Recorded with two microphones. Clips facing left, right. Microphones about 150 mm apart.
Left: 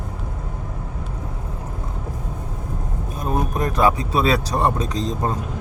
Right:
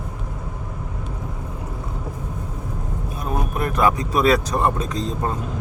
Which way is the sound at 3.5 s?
35° left (ahead or behind).